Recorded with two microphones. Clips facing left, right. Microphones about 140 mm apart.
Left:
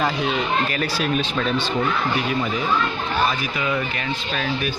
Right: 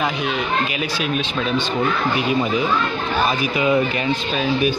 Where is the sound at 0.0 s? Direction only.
5° right (ahead or behind).